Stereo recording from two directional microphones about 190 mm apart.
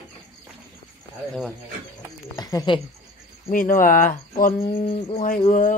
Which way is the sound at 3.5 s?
45° left (ahead or behind).